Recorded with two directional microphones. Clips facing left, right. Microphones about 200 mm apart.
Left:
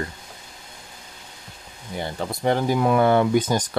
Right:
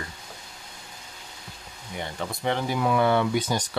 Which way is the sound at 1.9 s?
40° left (ahead or behind).